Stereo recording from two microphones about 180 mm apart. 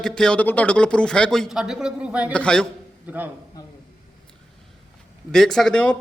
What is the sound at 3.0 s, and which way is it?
Speech, 10° right (ahead or behind).